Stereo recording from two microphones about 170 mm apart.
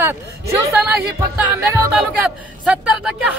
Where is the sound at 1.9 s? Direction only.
5° right (ahead or behind).